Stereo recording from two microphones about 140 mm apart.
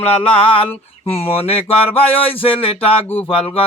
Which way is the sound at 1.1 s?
45° left (ahead or behind).